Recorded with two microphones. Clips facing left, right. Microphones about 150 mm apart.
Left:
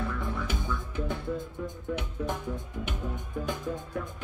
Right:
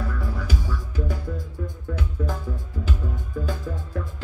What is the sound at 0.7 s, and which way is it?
Music, 25° left (ahead or behind).